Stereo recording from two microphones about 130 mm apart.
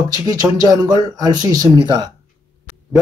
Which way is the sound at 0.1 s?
30° right (ahead or behind).